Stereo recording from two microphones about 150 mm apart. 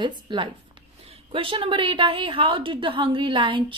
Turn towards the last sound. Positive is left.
turn(degrees=-35)  # may be behind; listen again after turning